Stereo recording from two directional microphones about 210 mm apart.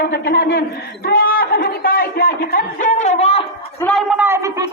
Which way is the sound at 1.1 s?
45° left (ahead or behind).